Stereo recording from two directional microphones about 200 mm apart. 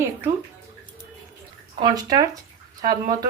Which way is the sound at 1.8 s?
20° right (ahead or behind).